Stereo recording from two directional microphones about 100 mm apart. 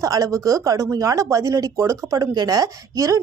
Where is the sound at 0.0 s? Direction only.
35° right (ahead or behind).